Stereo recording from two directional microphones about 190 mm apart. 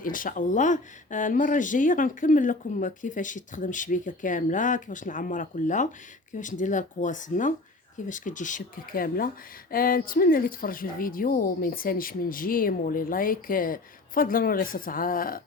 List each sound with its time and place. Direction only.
0.0 s speech: 45° left (ahead or behind)